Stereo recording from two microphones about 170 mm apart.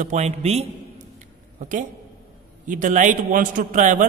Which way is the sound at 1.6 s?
50° right (ahead or behind).